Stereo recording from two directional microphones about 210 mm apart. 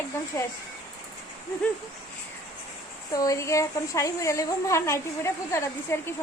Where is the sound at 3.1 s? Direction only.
15° left (ahead or behind).